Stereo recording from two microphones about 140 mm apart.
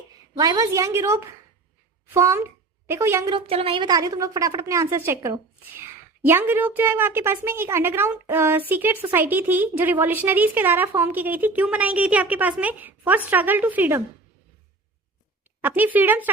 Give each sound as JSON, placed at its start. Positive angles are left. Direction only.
{"t": 0.3, "sound": "a woman's voice", "side_deg": -25}
{"t": 3.3, "sound": "speech", "side_deg": -45}
{"t": 3.8, "sound": "a woman's voice", "side_deg": -25}
{"t": 15.6, "sound": "a woman's voice", "side_deg": -15}